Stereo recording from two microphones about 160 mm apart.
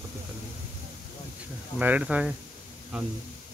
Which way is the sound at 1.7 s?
10° right (ahead or behind).